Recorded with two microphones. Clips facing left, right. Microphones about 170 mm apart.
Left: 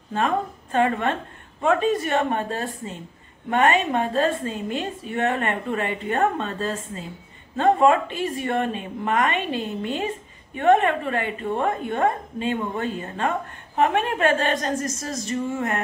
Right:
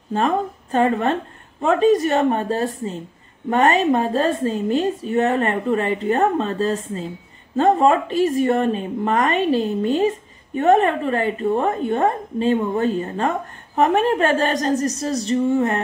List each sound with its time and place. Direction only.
0.1 s a woman's voice: 35° right (ahead or behind)